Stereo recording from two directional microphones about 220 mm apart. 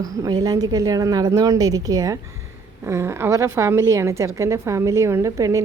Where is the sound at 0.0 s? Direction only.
15° right (ahead or behind).